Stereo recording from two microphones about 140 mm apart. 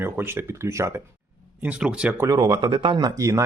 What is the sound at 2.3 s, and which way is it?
Speech, 30° right (ahead or behind).